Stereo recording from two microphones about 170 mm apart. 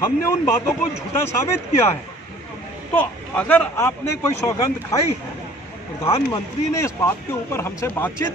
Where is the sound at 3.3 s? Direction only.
10° left (ahead or behind).